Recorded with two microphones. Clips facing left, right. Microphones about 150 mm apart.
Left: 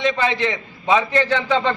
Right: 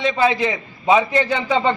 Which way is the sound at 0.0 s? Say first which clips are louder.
Right 2 dB; 5° right (ahead or behind).